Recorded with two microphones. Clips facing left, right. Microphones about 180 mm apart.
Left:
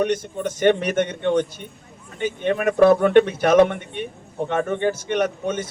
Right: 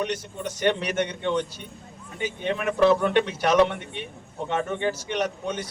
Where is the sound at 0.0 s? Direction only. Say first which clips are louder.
Left 7 dB; 50° left (ahead or behind).